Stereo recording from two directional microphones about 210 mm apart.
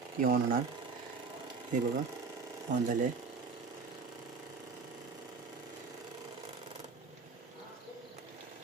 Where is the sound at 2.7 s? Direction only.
35° right (ahead or behind).